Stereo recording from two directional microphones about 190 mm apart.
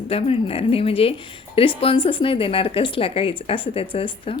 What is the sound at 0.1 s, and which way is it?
Speech, 30° left (ahead or behind).